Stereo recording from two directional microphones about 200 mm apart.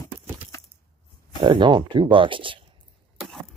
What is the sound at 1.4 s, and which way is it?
Speech, 25° right (ahead or behind).